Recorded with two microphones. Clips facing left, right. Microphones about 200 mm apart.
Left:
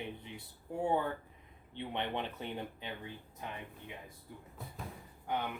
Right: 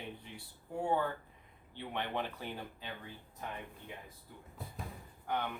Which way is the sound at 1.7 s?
20° left (ahead or behind).